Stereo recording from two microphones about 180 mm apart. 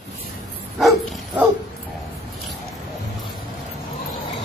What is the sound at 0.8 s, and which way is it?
Dog, centre (ahead or behind).